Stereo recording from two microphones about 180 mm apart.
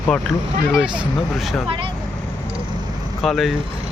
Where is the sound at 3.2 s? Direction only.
Centre (ahead or behind).